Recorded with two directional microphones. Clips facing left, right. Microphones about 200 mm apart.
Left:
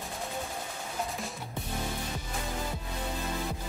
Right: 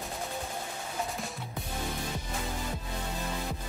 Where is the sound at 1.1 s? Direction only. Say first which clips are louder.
Even; centre (ahead or behind).